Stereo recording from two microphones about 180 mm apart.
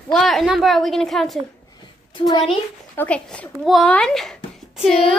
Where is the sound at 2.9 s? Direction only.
10° left (ahead or behind).